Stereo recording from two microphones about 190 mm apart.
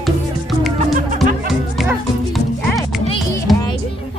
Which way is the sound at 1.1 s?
Centre (ahead or behind).